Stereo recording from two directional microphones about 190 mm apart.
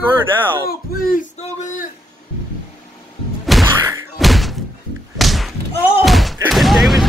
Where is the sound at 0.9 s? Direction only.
50° left (ahead or behind).